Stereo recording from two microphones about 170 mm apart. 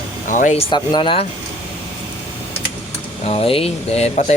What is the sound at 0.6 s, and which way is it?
Speech, 30° left (ahead or behind).